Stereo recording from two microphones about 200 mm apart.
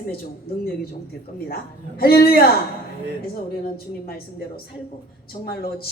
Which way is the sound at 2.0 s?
50° left (ahead or behind).